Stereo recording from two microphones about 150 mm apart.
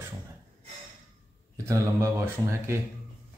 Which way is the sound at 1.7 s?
20° right (ahead or behind).